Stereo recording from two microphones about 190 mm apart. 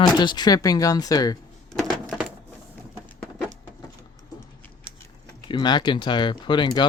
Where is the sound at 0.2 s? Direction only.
20° left (ahead or behind).